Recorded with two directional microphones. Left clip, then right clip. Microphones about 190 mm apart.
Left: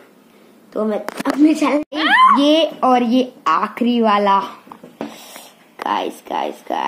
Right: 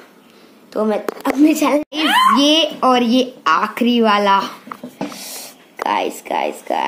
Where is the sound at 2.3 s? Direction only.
5° right (ahead or behind).